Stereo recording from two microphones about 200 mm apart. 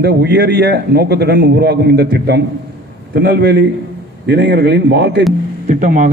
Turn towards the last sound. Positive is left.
turn(degrees=-40)  # may be behind; listen again after turning